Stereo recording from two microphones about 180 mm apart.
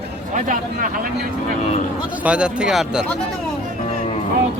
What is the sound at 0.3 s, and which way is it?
Speech, 50° right (ahead or behind).